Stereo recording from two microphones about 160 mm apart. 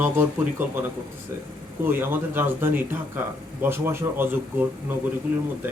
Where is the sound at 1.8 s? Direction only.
15° right (ahead or behind).